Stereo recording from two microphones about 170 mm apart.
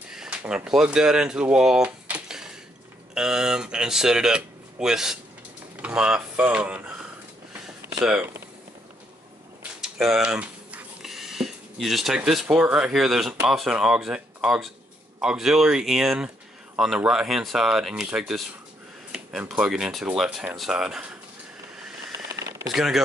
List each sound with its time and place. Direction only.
0.1 s speech: 5° right (ahead or behind)
8.0 s speech: 10° right (ahead or behind)
9.6 s speech: 5° right (ahead or behind)
22.3 s a sound: 15° right (ahead or behind)
22.8 s speech: centre (ahead or behind)